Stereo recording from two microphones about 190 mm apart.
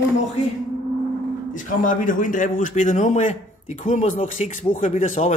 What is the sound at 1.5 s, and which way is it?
A man's voice, 45° left (ahead or behind).